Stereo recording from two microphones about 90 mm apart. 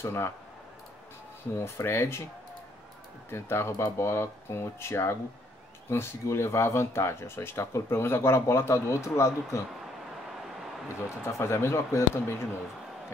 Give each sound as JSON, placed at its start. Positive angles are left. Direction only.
{"t": 0.0, "sound": "speech", "side_deg": 30}
{"t": 1.6, "sound": "speech", "side_deg": 25}
{"t": 3.3, "sound": "speech", "side_deg": 30}
{"t": 11.1, "sound": "speech", "side_deg": 30}